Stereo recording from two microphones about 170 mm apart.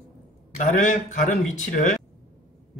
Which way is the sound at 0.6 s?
50° left (ahead or behind).